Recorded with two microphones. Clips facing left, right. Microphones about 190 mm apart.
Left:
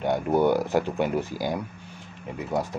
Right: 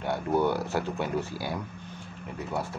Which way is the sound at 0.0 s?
15° left (ahead or behind).